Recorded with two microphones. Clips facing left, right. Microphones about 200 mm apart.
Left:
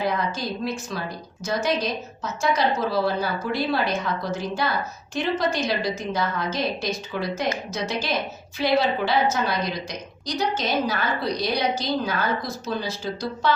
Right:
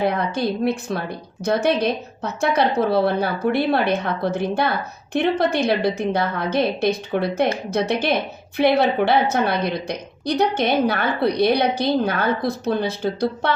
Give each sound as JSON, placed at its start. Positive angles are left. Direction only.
{"t": 0.0, "sound": "a woman's voice", "side_deg": -60}